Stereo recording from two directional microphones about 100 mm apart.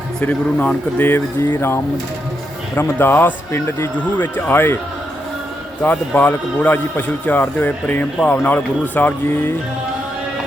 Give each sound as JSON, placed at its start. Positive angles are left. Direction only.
{"t": 0.2, "sound": "a man's voice", "side_deg": 10}
{"t": 5.8, "sound": "a man's voice", "side_deg": 15}